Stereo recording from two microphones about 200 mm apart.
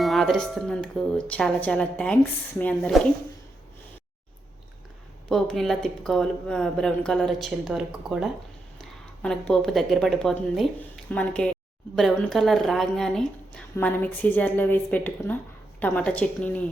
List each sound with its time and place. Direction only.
0.0 s a woman's voice: centre (ahead or behind)
5.3 s speech: centre (ahead or behind)
8.8 s a sound: centre (ahead or behind)
9.5 s a woman's voice: centre (ahead or behind)